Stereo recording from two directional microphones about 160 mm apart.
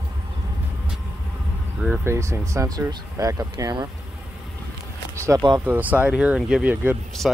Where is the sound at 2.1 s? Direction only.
15° right (ahead or behind).